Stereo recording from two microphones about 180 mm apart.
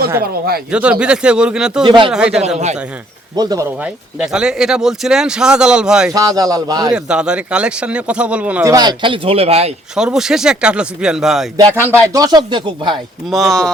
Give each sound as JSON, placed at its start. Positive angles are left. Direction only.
{"t": 0.2, "sound": "speech", "side_deg": -60}
{"t": 0.7, "sound": "speech", "side_deg": -5}
{"t": 1.8, "sound": "speech", "side_deg": -25}
{"t": 2.1, "sound": "speech", "side_deg": -5}
{"t": 3.3, "sound": "speech", "side_deg": -20}
{"t": 3.8, "sound": "speech", "side_deg": -5}
{"t": 6.1, "sound": "speech", "side_deg": -20}
{"t": 6.9, "sound": "speech", "side_deg": -5}
{"t": 8.6, "sound": "speech", "side_deg": -20}
{"t": 9.9, "sound": "speech", "side_deg": -5}
{"t": 11.5, "sound": "speech", "side_deg": -10}
{"t": 13.3, "sound": "speech", "side_deg": 0}